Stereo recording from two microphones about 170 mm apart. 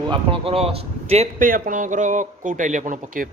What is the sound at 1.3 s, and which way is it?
Speech, 55° right (ahead or behind).